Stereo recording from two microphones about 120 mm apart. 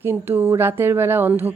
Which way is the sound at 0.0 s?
20° right (ahead or behind).